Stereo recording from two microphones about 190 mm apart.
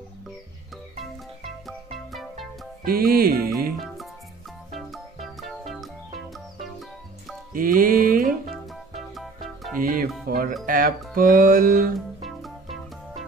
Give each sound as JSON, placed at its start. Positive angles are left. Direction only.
{"t": 1.7, "sound": "music", "side_deg": 0}
{"t": 2.8, "sound": "music", "side_deg": -50}
{"t": 4.7, "sound": "music", "side_deg": 0}
{"t": 7.5, "sound": "music", "side_deg": -45}
{"t": 8.5, "sound": "music", "side_deg": 0}
{"t": 9.8, "sound": "music", "side_deg": -45}
{"t": 10.2, "sound": "speech", "side_deg": -50}
{"t": 10.6, "sound": "music", "side_deg": -45}
{"t": 12.2, "sound": "music", "side_deg": 0}